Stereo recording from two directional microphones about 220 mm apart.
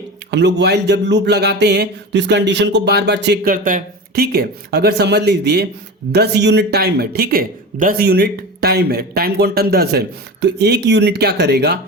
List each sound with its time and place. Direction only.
0.3 s speech: 50° right (ahead or behind)